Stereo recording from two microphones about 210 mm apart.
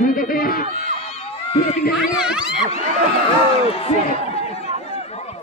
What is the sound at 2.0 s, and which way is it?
Speech, 5° right (ahead or behind).